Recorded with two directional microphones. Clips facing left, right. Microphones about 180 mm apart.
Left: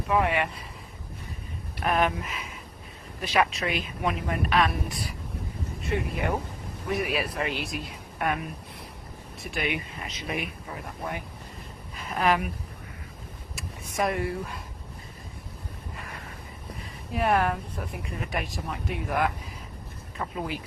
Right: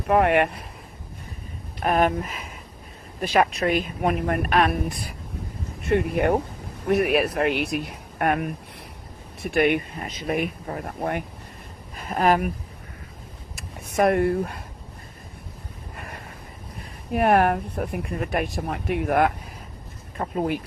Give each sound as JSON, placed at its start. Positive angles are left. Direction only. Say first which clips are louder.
{"t": 0.1, "sound": "speech", "louder": "right 6 dB", "side_deg": -60}
{"t": 1.8, "sound": "speech", "louder": "right 4 dB", "side_deg": -45}
{"t": 11.9, "sound": "speech", "louder": "right 4 dB", "side_deg": -45}
{"t": 13.6, "sound": "speech", "louder": "right 7 dB", "side_deg": -60}
{"t": 17.1, "sound": "speech", "louder": "right 6 dB", "side_deg": -60}
{"t": 20.1, "sound": "speech", "louder": "right 7 dB", "side_deg": -40}